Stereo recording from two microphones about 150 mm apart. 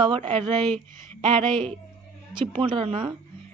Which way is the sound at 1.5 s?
35° right (ahead or behind).